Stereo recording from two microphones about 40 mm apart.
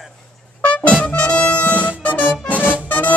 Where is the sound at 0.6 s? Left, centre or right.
Left.